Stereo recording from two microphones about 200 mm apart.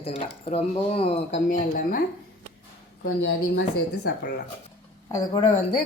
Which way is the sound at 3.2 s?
65° left (ahead or behind).